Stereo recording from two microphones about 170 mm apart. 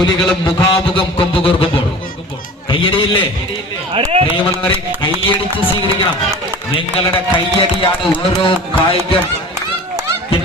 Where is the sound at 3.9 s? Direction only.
35° right (ahead or behind).